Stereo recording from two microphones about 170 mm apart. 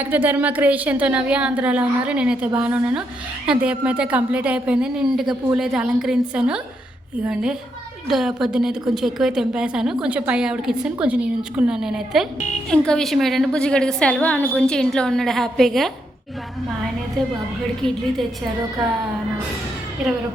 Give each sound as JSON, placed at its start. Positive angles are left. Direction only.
{"t": 0.0, "sound": "a woman's voice", "side_deg": -10}
{"t": 8.0, "sound": "a woman's voice", "side_deg": 0}
{"t": 17.2, "sound": "a woman's voice", "side_deg": 5}